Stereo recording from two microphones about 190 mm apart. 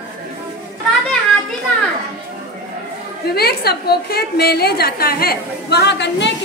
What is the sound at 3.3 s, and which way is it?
A woman's voice, 55° left (ahead or behind).